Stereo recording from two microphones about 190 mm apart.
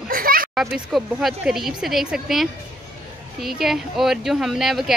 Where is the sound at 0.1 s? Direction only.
50° right (ahead or behind).